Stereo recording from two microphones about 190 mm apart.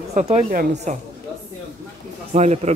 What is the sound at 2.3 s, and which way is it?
Speech, 35° right (ahead or behind).